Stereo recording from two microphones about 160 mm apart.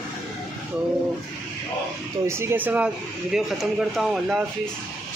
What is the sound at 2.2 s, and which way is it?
Speech, 15° right (ahead or behind).